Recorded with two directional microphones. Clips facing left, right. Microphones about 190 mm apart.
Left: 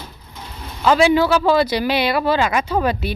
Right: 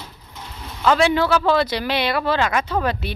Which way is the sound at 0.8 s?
5° left (ahead or behind).